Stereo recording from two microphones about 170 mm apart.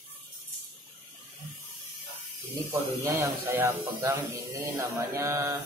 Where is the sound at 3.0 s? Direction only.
15° right (ahead or behind).